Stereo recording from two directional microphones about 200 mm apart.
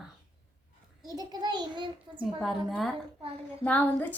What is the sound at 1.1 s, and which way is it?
Speech, 20° right (ahead or behind).